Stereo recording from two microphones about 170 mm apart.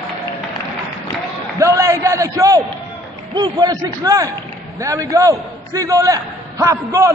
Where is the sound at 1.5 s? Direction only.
20° right (ahead or behind).